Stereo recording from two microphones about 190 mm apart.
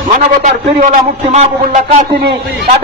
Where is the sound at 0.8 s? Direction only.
35° right (ahead or behind).